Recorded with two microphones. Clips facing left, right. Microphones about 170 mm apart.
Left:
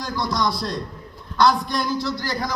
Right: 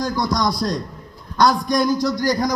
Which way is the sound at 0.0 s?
45° right (ahead or behind).